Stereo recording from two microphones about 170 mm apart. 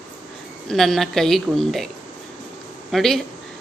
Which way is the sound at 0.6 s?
Centre (ahead or behind).